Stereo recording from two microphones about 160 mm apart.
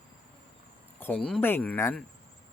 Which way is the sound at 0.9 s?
10° left (ahead or behind).